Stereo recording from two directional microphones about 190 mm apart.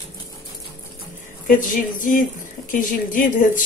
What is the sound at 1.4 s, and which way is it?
Speech, 45° left (ahead or behind).